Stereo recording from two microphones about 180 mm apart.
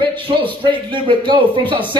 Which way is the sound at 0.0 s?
25° right (ahead or behind).